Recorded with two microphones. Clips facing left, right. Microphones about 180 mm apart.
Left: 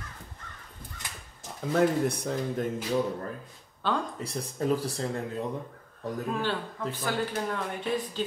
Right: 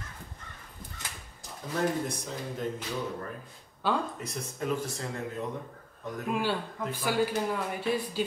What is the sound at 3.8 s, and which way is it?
Speech, 10° right (ahead or behind).